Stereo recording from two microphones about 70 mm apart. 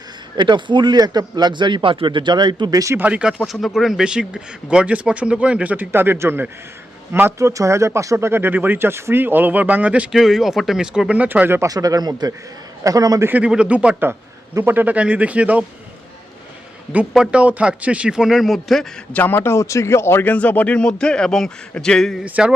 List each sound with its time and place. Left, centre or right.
0.5 s a man's voice: right
3.0 s speech: centre
3.2 s speech: centre
5.7 s speech: right
7.3 s speech: right; by 10.1 s centre
10.1 s speech: centre
11.3 s speech: right
11.6 s speech: right
13.5 s speech: centre
14.6 s speech: right
17.3 s speech: centre
19.1 s speech: left
20.2 s speech: left; by 22.2 s centre
22.2 s speech: centre